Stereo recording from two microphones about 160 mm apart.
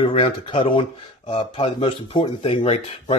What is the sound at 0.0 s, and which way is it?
Speech, 35° left (ahead or behind).